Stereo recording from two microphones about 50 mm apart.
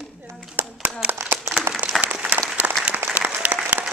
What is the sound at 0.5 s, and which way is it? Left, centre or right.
Clapping, right.